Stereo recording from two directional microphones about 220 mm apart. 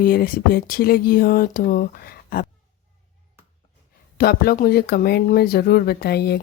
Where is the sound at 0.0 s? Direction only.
40° left (ahead or behind).